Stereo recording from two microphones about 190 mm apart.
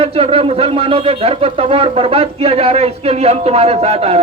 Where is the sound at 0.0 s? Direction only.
30° right (ahead or behind).